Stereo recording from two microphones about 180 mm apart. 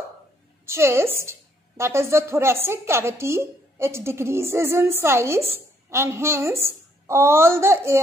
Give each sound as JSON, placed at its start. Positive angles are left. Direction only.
{"t": 0.7, "sound": "a woman's voice", "side_deg": -15}